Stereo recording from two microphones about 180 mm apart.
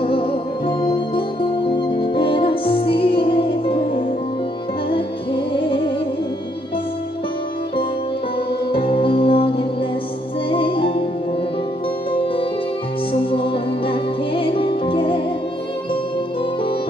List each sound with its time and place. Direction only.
0.0 s music: 30° left (ahead or behind)
8.7 s music: 30° left (ahead or behind)
13.1 s music: 30° left (ahead or behind)